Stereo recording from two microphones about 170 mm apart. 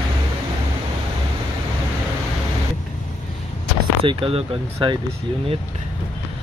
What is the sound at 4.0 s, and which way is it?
Speech, 30° right (ahead or behind).